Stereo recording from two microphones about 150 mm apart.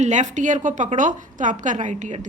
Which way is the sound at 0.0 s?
55° right (ahead or behind).